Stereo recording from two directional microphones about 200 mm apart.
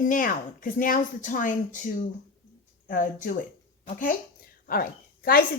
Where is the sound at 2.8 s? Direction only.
40° left (ahead or behind).